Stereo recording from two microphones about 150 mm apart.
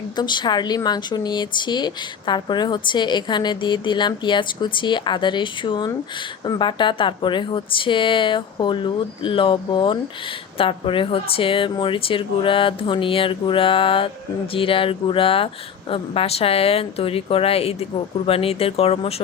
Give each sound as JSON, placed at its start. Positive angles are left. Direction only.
{"t": 0.2, "sound": "speech", "side_deg": 30}